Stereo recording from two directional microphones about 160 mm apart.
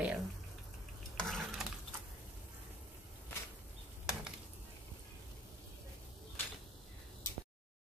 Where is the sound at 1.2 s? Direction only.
Centre (ahead or behind).